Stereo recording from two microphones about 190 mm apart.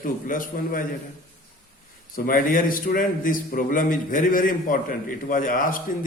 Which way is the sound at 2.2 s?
50° left (ahead or behind).